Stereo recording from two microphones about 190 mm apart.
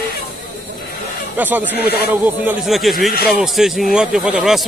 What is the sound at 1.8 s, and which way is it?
Speech, 55° left (ahead or behind).